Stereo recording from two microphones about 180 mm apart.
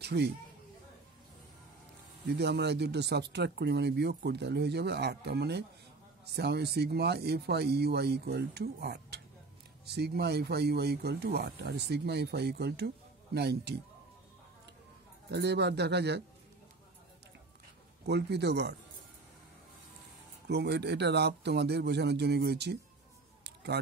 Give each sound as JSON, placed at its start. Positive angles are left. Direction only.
{"t": 0.0, "sound": "speech", "side_deg": -65}
{"t": 2.2, "sound": "speech", "side_deg": -65}
{"t": 15.3, "sound": "speech", "side_deg": -70}
{"t": 18.0, "sound": "speech", "side_deg": -70}
{"t": 20.4, "sound": "speech", "side_deg": -70}
{"t": 23.4, "sound": "a sound", "side_deg": -65}